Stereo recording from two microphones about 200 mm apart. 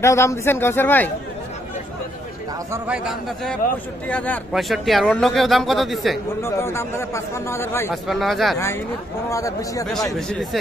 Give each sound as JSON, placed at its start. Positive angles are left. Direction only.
{"t": 0.0, "sound": "a man's voice", "side_deg": 15}
{"t": 2.7, "sound": "speech", "side_deg": -5}
{"t": 4.1, "sound": "speech", "side_deg": 5}
{"t": 6.4, "sound": "a man's voice", "side_deg": 10}
{"t": 7.9, "sound": "speech", "side_deg": 0}
{"t": 9.3, "sound": "a man's voice", "side_deg": 15}